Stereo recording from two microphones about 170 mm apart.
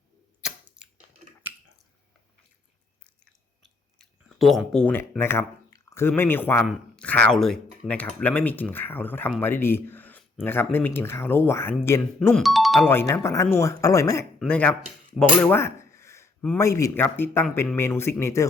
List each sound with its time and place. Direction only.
0.8 s a sound: 5° right (ahead or behind)
3.9 s speech: centre (ahead or behind)
12.3 s speech: centre (ahead or behind)
12.9 s speech: 15° left (ahead or behind)
14.3 s speech: 5° left (ahead or behind)
15.4 s a sound: 15° left (ahead or behind)
16.6 s speech: 20° left (ahead or behind)